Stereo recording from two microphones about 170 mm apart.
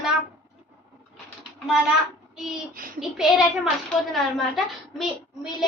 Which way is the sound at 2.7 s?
55° right (ahead or behind).